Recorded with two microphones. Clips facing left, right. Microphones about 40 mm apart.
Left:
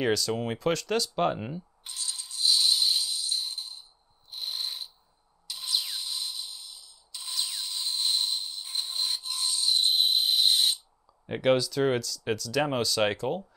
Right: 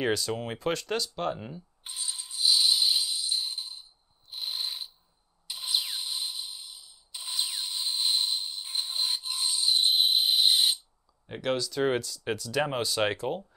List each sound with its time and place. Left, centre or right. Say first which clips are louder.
0.0 s speech: left 1 dB; centre
0.3 s speech: left 2 dB; centre
1.1 s speech: left 5 dB; left
1.9 s music: right 1 dB; centre
4.3 s pulleys: even; centre
5.5 s rub: right 1 dB; centre
11.4 s speech: left 6 dB; centre
11.7 s speech: left 1 dB; centre